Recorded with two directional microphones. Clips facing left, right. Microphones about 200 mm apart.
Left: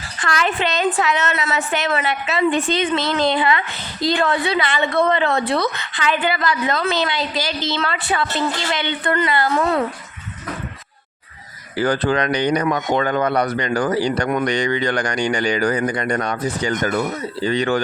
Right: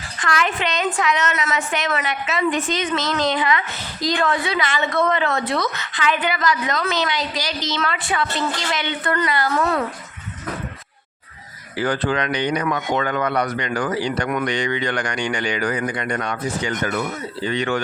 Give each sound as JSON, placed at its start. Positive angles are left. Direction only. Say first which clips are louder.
{"t": 0.2, "sound": "a man's voice", "louder": "left 2 dB", "side_deg": 35}
{"t": 11.8, "sound": "a man's voice", "louder": "left 3 dB", "side_deg": 40}